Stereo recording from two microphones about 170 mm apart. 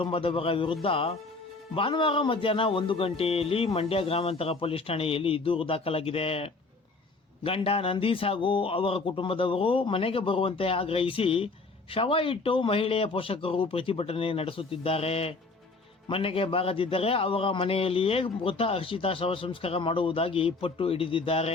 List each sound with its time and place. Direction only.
0.0 s speech: 30° left (ahead or behind)